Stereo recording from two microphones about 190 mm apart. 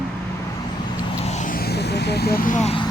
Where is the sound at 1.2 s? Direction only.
40° left (ahead or behind).